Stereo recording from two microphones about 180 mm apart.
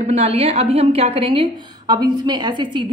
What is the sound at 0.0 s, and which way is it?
A woman's voice, 35° right (ahead or behind).